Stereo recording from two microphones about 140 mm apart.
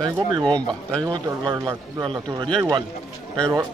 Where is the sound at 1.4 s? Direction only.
30° right (ahead or behind).